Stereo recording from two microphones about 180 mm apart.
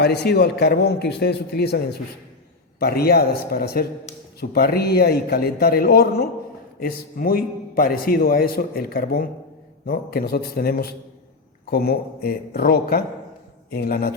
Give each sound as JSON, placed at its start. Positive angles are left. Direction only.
{"t": 0.0, "sound": "a man's voice", "side_deg": 65}